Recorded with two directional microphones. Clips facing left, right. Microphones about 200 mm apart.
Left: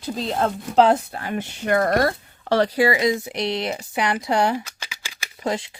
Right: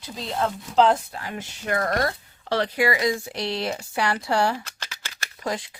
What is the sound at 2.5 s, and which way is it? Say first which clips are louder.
Speech: left 4 dB; 40° left (ahead or behind).